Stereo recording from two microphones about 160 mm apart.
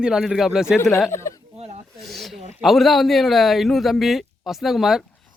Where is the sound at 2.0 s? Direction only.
Centre (ahead or behind).